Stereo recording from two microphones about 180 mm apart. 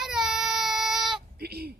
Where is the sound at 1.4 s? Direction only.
60° right (ahead or behind).